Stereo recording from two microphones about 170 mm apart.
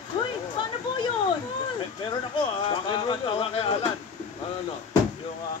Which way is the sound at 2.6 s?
30° left (ahead or behind).